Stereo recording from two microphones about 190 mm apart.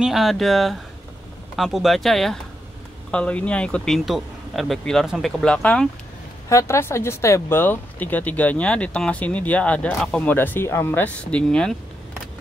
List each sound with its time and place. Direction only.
0.0 s speech: centre (ahead or behind)